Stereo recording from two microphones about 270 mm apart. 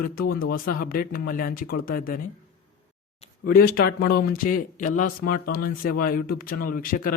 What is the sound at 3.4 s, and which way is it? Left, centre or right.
A man's voice, left.